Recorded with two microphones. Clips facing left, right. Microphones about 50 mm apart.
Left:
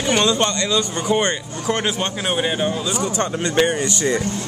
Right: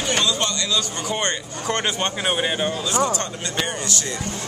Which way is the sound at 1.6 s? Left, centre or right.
Centre.